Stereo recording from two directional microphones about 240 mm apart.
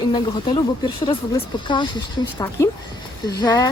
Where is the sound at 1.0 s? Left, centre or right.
Centre.